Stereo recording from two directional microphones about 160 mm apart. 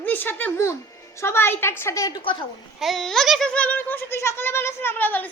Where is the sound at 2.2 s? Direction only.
30° left (ahead or behind).